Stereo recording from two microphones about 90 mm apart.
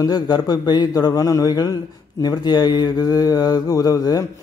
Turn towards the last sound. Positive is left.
turn(degrees=45)  # may be behind; listen again after turning